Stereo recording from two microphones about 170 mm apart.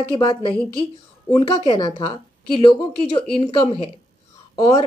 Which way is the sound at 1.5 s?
35° left (ahead or behind).